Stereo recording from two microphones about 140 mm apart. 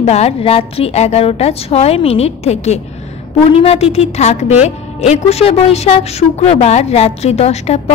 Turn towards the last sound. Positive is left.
turn(degrees=50)  # may be behind; listen again after turning